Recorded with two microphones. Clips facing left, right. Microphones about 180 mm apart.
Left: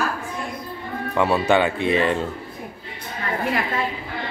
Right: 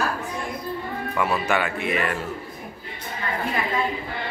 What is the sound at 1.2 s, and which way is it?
Speech, 30° left (ahead or behind).